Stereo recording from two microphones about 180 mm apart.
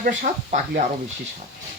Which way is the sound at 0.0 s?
50° right (ahead or behind).